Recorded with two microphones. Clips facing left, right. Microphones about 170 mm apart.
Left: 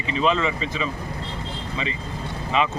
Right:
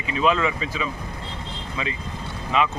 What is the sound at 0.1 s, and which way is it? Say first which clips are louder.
Speech: even; 5° right (ahead or behind).